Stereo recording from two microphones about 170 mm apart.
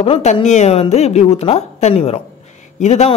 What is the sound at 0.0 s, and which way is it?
A woman's voice, 40° left (ahead or behind).